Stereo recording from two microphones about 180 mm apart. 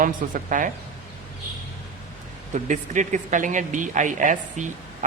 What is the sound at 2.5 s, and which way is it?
Speech, 45° right (ahead or behind).